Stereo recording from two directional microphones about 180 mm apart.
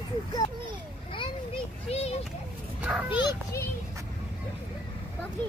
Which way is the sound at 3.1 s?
25° left (ahead or behind).